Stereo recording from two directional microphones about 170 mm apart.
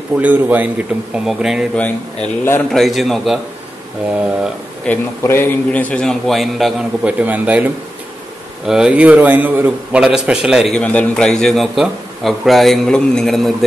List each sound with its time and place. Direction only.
0.2 s a man's voice: 10° right (ahead or behind)
4.8 s a man's voice: 15° left (ahead or behind)